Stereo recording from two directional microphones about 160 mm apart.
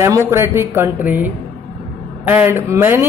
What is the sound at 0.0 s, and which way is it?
A woman's voice, 15° right (ahead or behind).